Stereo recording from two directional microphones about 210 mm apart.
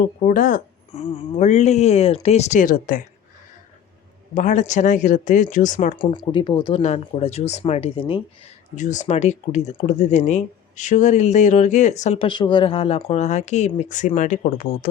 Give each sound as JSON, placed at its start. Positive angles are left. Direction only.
{"t": 0.0, "sound": "speech", "side_deg": 40}
{"t": 4.4, "sound": "speech", "side_deg": 35}
{"t": 6.0, "sound": "speech", "side_deg": 25}